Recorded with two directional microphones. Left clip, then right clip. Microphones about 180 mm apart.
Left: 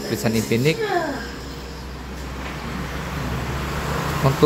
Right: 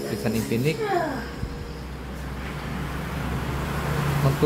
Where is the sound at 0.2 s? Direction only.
25° left (ahead or behind).